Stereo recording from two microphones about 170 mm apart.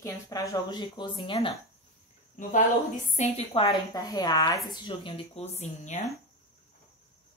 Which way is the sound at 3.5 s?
30° left (ahead or behind).